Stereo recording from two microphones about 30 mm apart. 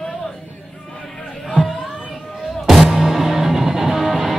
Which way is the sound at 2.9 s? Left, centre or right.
Centre.